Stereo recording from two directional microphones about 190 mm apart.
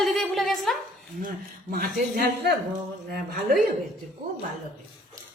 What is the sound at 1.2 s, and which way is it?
Speech, 50° right (ahead or behind).